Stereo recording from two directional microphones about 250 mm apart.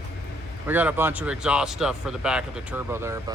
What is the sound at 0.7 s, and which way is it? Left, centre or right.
Speech, centre.